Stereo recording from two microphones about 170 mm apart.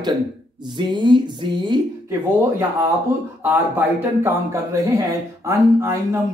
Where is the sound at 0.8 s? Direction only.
25° right (ahead or behind).